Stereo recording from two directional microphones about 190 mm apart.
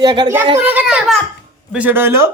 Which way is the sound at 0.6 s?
10° right (ahead or behind).